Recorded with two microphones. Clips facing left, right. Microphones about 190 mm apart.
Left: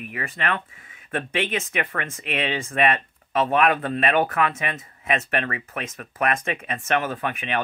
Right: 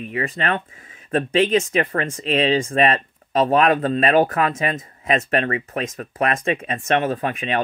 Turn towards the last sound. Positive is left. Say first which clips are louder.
# right 4 dB
turn(degrees=-30)  # may be behind; listen again after turning